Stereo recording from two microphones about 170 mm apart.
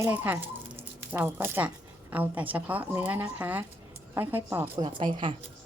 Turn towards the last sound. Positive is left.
turn(degrees=-25)  # may be behind; listen again after turning